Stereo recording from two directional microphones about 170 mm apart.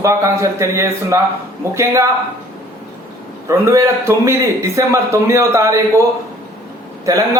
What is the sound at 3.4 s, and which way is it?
A man's voice, 20° right (ahead or behind).